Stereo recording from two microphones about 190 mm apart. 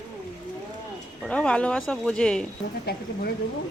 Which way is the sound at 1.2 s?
5° left (ahead or behind).